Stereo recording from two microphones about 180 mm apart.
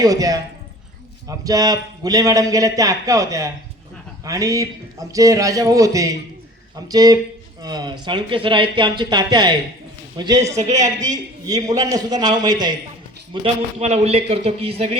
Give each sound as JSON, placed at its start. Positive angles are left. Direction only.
{"t": 0.0, "sound": "a man's voice", "side_deg": -20}
{"t": 13.4, "sound": "a man's voice", "side_deg": -35}